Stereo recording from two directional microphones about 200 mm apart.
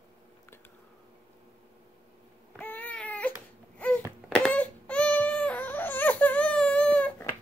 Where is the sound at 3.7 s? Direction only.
5° left (ahead or behind).